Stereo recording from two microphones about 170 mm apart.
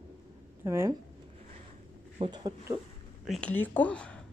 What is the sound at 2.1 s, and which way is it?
Speech, 25° right (ahead or behind).